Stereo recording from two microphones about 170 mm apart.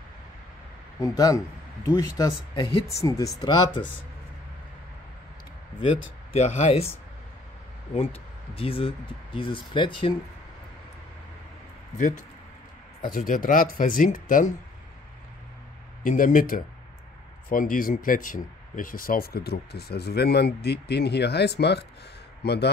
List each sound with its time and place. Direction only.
1.0 s speech: 20° left (ahead or behind)
5.8 s speech: 35° left (ahead or behind)
7.9 s speech: 35° left (ahead or behind)
12.0 s speech: 45° left (ahead or behind)
16.0 s speech: 50° left (ahead or behind); by 22.7 s 75° left (ahead or behind)